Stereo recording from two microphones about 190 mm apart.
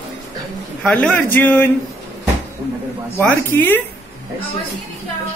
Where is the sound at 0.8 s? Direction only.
5° left (ahead or behind).